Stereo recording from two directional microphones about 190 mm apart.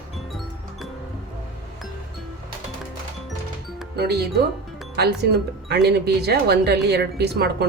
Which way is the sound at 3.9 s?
60° right (ahead or behind).